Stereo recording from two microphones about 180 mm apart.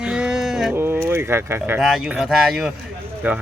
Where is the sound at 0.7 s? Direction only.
15° right (ahead or behind).